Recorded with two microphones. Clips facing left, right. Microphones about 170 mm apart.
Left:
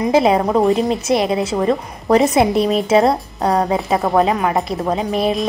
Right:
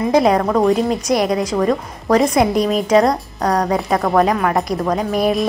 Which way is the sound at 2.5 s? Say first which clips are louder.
Left 1 dB; 30° left (ahead or behind).